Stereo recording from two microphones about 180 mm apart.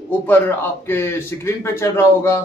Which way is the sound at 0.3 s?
10° left (ahead or behind).